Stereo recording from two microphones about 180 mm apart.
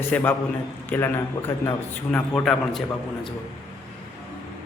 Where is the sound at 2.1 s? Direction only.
5° left (ahead or behind).